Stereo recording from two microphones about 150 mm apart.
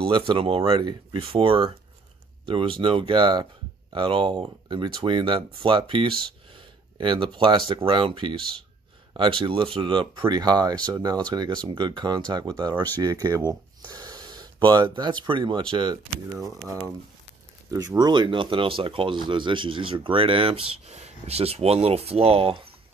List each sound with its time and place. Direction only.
0.3 s speech: 35° right (ahead or behind)